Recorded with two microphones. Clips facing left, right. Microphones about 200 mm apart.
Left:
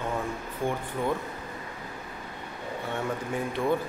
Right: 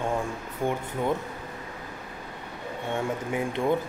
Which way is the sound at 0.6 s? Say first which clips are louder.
Right 2 dB; 20° right (ahead or behind).